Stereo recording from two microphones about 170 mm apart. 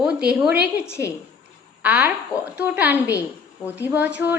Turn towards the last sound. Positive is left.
turn(degrees=-10)  # may be behind; listen again after turning